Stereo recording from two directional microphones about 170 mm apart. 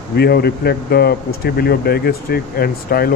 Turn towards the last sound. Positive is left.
turn(degrees=65)  # may be behind; listen again after turning